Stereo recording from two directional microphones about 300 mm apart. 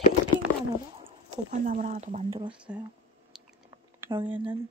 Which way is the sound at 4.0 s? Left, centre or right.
Centre.